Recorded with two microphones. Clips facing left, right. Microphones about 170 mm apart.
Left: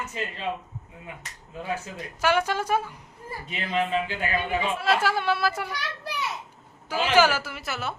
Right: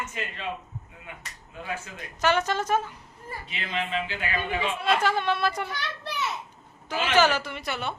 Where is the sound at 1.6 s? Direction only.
35° left (ahead or behind).